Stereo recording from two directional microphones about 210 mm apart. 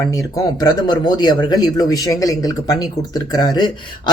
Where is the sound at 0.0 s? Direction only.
15° left (ahead or behind).